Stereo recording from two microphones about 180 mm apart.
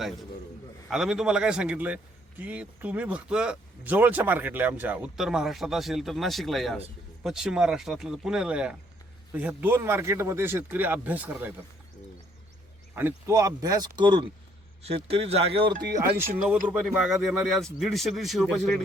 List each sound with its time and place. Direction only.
0.9 s speech: 5° right (ahead or behind)
13.0 s speech: 15° right (ahead or behind)
16.6 s speech: 5° right (ahead or behind)